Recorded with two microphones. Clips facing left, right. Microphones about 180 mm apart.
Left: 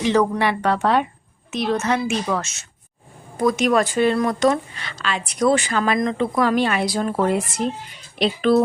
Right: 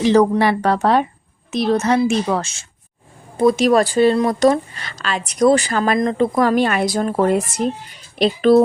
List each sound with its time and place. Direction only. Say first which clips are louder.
0.0 s speech: right 5 dB; 35° right (ahead or behind)